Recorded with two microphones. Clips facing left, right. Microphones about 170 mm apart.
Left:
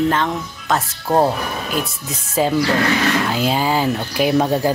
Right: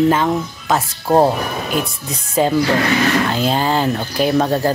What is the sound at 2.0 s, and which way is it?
Speech, 5° left (ahead or behind).